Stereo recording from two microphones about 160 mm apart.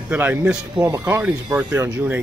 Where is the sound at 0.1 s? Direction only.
10° right (ahead or behind).